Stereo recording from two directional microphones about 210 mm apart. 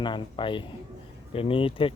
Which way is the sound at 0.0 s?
20° left (ahead or behind).